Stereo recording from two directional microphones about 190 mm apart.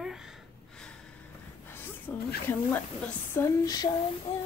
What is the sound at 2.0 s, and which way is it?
Snake, 10° left (ahead or behind).